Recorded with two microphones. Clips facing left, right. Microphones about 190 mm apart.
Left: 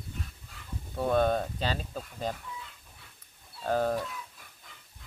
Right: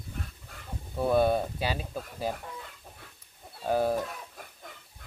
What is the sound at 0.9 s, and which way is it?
Speech, 10° right (ahead or behind).